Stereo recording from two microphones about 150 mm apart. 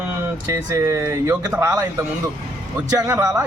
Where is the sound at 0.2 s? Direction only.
20° right (ahead or behind).